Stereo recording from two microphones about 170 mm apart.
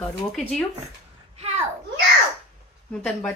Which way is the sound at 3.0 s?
5° left (ahead or behind).